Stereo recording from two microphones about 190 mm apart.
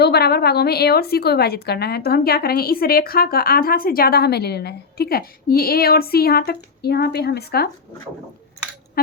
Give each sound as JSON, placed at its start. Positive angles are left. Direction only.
{"t": 0.0, "sound": "a woman's voice", "side_deg": 55}